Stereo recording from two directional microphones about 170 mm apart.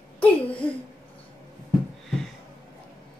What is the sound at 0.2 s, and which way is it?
Speech, 10° left (ahead or behind).